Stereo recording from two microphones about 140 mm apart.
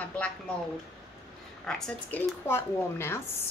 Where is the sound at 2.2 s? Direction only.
15° left (ahead or behind).